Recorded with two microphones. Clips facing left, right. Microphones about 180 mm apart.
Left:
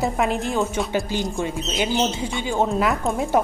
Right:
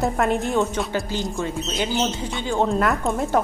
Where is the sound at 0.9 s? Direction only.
15° left (ahead or behind).